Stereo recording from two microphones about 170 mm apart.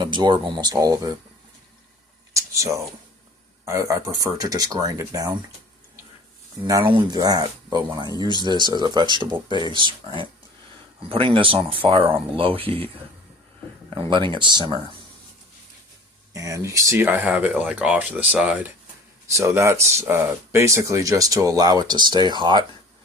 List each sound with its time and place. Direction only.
0.0 s speech: 25° right (ahead or behind)
2.3 s a sound: 20° right (ahead or behind)
3.7 s speech: 20° right (ahead or behind)
6.7 s speech: 25° right (ahead or behind)
8.1 s speech: 25° left (ahead or behind)
8.4 s speech: 25° right (ahead or behind)
14.1 s speech: 30° right (ahead or behind)
16.3 s speech: 20° right (ahead or behind)